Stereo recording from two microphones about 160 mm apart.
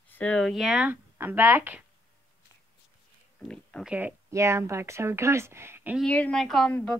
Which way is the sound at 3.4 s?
5° left (ahead or behind).